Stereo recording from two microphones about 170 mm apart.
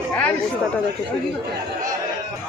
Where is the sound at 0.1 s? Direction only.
10° left (ahead or behind).